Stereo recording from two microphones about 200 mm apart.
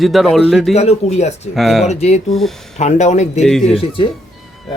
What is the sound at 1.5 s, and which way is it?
Speech, centre (ahead or behind).